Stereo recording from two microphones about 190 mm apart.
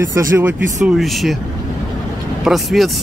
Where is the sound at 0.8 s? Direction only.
Centre (ahead or behind).